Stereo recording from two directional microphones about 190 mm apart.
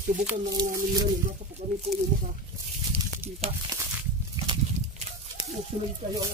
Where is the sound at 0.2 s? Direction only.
20° right (ahead or behind).